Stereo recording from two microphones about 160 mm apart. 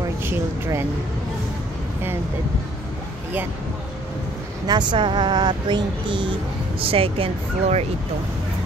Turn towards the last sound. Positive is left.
turn(degrees=-40)  # may be behind; listen again after turning